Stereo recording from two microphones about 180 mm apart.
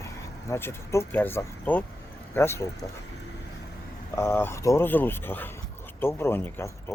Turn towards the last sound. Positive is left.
turn(degrees=15)  # may be behind; listen again after turning